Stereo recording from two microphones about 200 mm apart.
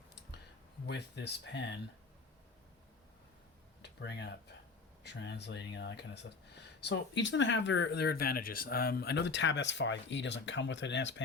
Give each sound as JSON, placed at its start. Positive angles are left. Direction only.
{"t": 0.9, "sound": "speech", "side_deg": 60}
{"t": 3.8, "sound": "speech", "side_deg": 60}